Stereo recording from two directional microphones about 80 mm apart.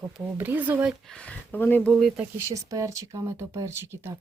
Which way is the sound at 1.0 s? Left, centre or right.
Centre.